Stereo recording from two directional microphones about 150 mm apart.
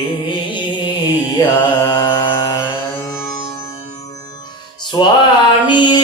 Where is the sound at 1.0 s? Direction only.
25° left (ahead or behind).